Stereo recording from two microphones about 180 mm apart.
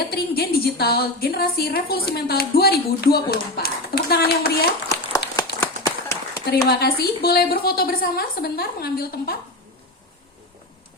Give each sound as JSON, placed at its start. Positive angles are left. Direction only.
{"t": 0.1, "sound": "a woman's voice", "side_deg": 60}
{"t": 5.4, "sound": "run", "side_deg": 15}
{"t": 6.7, "sound": "a woman's voice", "side_deg": 60}